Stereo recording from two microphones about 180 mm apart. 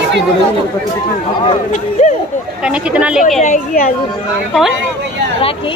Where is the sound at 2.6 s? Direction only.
5° right (ahead or behind).